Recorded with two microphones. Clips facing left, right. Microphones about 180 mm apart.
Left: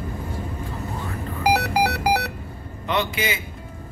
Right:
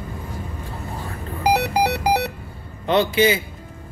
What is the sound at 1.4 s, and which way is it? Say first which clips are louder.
Music: right 2 dB; 20° right (ahead or behind).